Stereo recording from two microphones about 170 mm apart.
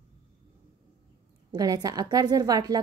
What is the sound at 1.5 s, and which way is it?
A woman's voice, 20° right (ahead or behind).